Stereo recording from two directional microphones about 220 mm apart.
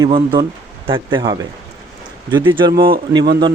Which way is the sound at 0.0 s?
20° right (ahead or behind).